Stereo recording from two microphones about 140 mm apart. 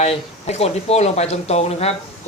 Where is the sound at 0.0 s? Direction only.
50° left (ahead or behind).